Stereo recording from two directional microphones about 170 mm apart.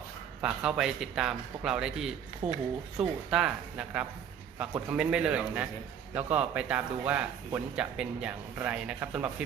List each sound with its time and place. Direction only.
0.4 s speech: 5° right (ahead or behind)
2.4 s speech: 40° right (ahead or behind)
3.0 s speech: 5° right (ahead or behind)